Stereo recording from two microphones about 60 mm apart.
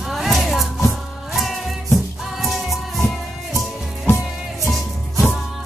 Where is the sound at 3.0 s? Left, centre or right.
Left.